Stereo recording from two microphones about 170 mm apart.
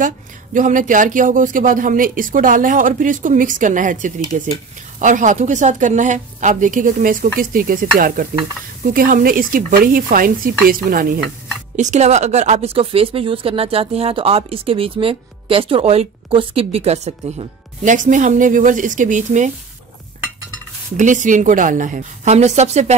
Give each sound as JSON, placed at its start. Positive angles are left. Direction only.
{"t": 0.6, "sound": "speech", "side_deg": -50}
{"t": 11.7, "sound": "speech", "side_deg": -45}
{"t": 20.9, "sound": "speech", "side_deg": -45}